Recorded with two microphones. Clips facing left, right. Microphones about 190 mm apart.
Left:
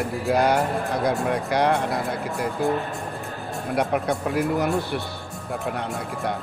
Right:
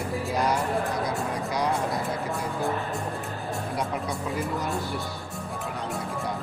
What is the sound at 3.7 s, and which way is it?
Speech, 65° left (ahead or behind).